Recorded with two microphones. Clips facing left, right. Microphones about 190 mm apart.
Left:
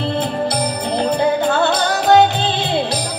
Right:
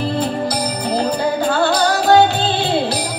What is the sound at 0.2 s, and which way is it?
Music, 25° left (ahead or behind).